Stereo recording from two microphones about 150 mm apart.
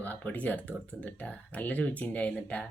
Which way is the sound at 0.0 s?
10° left (ahead or behind).